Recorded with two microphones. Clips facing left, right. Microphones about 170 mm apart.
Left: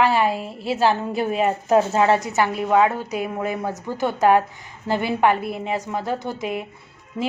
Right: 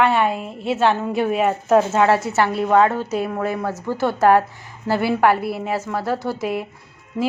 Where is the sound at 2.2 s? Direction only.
15° left (ahead or behind).